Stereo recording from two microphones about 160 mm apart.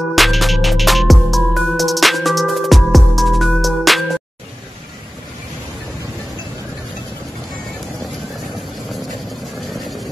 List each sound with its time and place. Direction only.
0.1 s music: centre (ahead or behind)